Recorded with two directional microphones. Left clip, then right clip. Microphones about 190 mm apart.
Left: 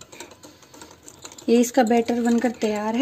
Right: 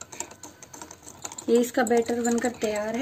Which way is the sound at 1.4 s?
30° left (ahead or behind).